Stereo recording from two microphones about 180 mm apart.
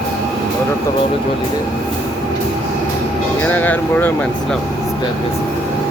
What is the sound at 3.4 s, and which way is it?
Speech, 10° left (ahead or behind).